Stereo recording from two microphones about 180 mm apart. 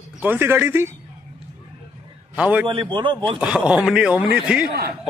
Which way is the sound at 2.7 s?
25° right (ahead or behind).